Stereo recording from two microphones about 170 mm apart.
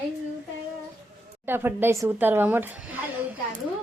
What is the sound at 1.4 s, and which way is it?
Speech, 10° right (ahead or behind).